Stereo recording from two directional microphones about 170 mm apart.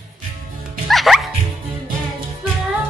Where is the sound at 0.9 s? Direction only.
Centre (ahead or behind).